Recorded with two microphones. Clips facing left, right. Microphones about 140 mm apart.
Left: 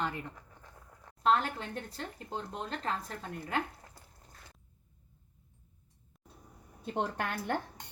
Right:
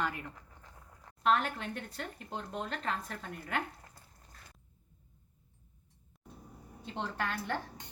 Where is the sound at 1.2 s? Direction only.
30° left (ahead or behind).